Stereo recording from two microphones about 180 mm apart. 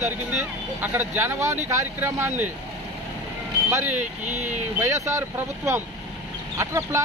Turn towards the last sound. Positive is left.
turn(degrees=-15)  # may be behind; listen again after turning